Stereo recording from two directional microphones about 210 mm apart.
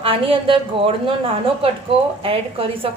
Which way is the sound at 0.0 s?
25° right (ahead or behind).